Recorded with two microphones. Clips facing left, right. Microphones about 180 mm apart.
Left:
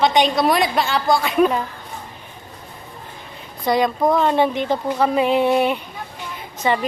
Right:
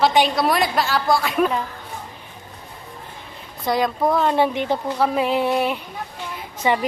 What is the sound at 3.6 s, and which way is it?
A woman's voice, centre (ahead or behind).